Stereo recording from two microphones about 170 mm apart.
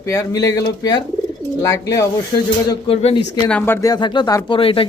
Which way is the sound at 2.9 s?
35° left (ahead or behind).